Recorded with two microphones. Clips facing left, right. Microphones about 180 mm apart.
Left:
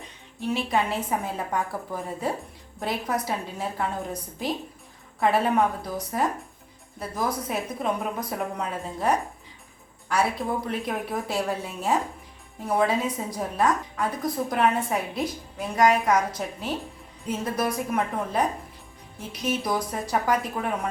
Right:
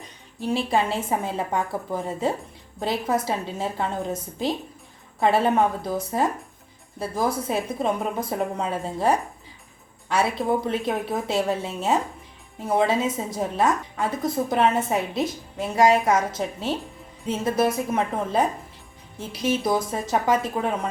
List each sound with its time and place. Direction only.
0.4 s a woman's voice: 30° right (ahead or behind)